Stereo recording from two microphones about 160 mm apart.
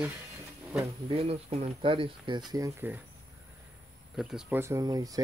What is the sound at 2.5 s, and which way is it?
Speech, 20° right (ahead or behind).